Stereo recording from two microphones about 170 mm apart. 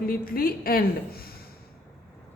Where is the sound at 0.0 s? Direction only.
60° left (ahead or behind).